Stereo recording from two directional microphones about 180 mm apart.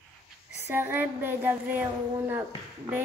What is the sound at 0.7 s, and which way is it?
Speech, 10° right (ahead or behind).